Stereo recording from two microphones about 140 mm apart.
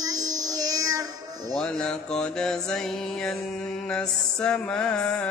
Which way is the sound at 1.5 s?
5° left (ahead or behind).